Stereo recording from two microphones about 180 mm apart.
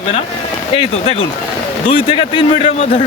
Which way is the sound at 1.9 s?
30° left (ahead or behind).